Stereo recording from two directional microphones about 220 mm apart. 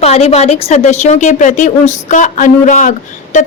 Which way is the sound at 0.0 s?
30° left (ahead or behind).